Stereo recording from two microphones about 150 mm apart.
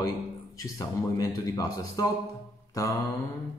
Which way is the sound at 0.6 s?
20° left (ahead or behind).